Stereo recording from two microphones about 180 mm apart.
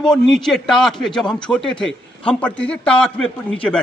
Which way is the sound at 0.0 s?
Centre (ahead or behind).